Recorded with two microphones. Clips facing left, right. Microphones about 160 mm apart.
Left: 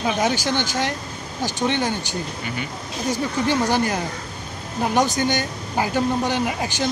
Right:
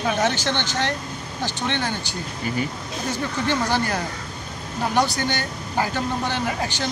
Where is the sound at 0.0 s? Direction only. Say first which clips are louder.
Left 1 dB; 15° left (ahead or behind).